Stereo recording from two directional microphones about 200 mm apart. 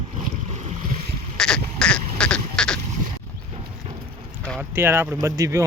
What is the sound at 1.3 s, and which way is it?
Goat, 5° left (ahead or behind).